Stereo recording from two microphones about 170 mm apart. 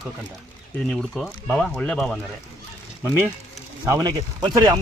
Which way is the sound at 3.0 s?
15° right (ahead or behind).